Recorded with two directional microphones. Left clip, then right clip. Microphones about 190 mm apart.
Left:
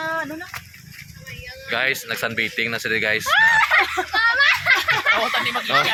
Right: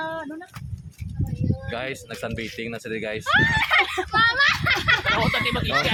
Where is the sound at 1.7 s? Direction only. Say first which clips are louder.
Left 13 dB; 5° right (ahead or behind).